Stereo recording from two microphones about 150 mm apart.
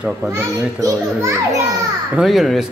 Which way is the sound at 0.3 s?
20° right (ahead or behind).